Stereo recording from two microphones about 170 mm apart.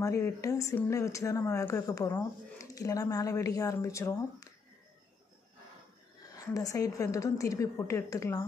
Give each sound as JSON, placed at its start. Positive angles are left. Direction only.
{"t": 0.0, "sound": "speech", "side_deg": 15}
{"t": 6.3, "sound": "a woman's voice", "side_deg": 20}